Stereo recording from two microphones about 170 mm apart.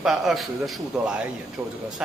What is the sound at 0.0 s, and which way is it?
A man's voice, centre (ahead or behind).